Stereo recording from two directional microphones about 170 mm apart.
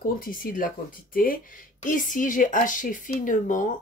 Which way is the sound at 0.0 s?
60° left (ahead or behind).